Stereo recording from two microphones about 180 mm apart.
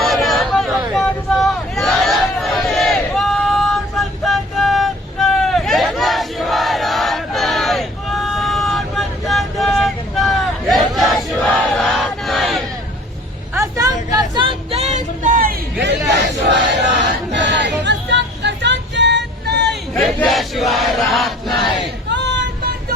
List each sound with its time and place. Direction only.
0.0 s a sound: centre (ahead or behind)
13.5 s vehicle: 15° right (ahead or behind); by 15.5 s 50° right (ahead or behind)
15.8 s crowd: 70° right (ahead or behind)
17.1 s a sound: 75° right (ahead or behind)
19.9 s chant: 5° left (ahead or behind)
22.1 s music: 75° right (ahead or behind)